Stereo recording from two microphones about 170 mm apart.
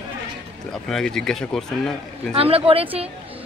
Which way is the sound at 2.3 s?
35° right (ahead or behind).